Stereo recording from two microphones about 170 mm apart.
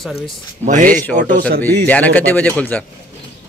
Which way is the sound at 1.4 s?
60° right (ahead or behind).